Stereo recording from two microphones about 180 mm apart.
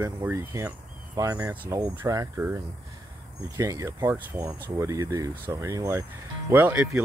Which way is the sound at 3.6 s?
20° right (ahead or behind).